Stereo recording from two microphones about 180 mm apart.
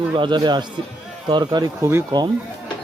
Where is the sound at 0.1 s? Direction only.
25° right (ahead or behind).